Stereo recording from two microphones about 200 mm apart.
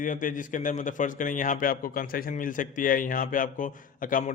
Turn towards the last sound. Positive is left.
turn(degrees=45)  # may be behind; listen again after turning